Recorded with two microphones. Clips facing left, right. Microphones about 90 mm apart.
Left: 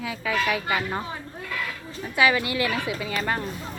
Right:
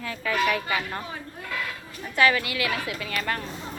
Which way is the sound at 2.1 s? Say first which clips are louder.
Even; 10° left (ahead or behind).